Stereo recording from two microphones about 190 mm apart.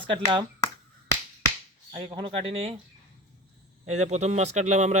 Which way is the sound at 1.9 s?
30° right (ahead or behind).